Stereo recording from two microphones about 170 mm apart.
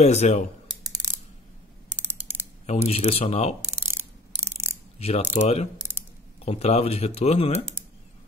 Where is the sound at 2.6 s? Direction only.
40° left (ahead or behind).